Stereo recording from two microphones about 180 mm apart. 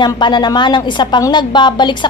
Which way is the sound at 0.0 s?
25° left (ahead or behind).